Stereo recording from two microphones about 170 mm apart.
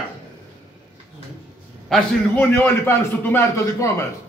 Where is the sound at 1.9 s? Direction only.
10° left (ahead or behind).